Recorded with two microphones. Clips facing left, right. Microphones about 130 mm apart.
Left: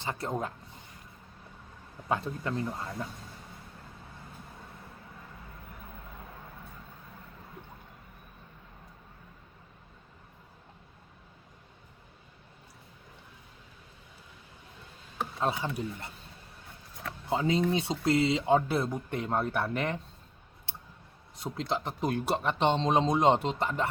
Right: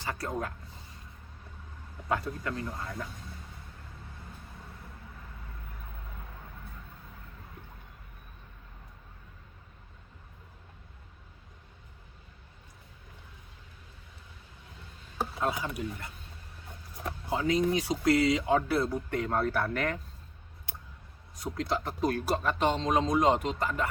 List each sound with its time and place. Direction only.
0.0 s speech: 25° left (ahead or behind)
2.0 s speech: 25° left (ahead or behind)
15.4 s speech: 25° left (ahead or behind)
17.2 s speech: 25° left (ahead or behind)
20.7 s a sound: 30° left (ahead or behind)
21.3 s speech: 25° left (ahead or behind)